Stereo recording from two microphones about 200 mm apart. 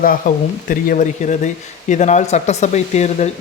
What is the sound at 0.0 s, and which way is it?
Speech, 45° left (ahead or behind).